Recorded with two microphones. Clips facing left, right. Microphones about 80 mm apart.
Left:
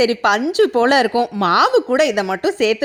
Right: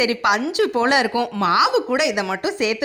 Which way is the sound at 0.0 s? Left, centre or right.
Left.